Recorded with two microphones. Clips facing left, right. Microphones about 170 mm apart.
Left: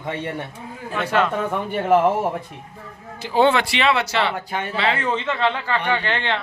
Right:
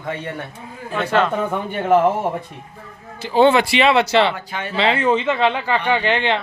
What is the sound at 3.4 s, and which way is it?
Speech, 5° right (ahead or behind).